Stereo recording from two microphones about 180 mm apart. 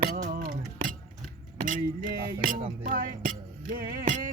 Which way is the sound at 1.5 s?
50° right (ahead or behind).